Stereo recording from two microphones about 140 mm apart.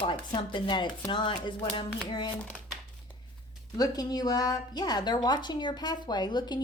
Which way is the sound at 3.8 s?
30° left (ahead or behind).